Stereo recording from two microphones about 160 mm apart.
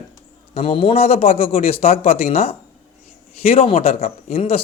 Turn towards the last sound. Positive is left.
turn(degrees=40)  # may be behind; listen again after turning